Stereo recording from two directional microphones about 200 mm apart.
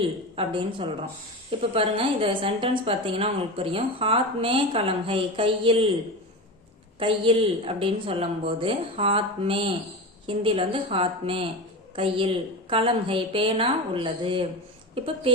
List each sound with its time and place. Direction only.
0.3 s a woman's voice: 25° right (ahead or behind)
7.0 s a woman's voice: 25° right (ahead or behind)